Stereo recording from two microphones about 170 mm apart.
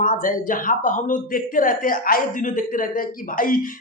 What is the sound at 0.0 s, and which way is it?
Speech, 50° left (ahead or behind).